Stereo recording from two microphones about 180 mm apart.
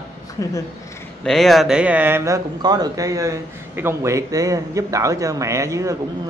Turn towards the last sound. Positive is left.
turn(degrees=-15)  # may be behind; listen again after turning